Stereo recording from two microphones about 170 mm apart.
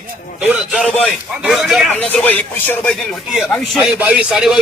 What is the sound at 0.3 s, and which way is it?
A man's voice, 5° right (ahead or behind).